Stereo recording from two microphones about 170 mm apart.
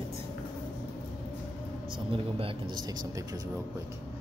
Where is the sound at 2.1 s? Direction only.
30° right (ahead or behind).